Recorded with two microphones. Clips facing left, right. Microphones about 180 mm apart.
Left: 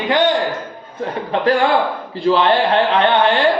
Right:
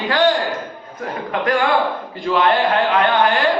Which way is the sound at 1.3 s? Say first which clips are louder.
Left 3 dB; 30° left (ahead or behind).